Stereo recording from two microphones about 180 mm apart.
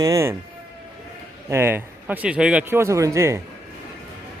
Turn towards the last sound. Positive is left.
turn(degrees=-15)  # may be behind; listen again after turning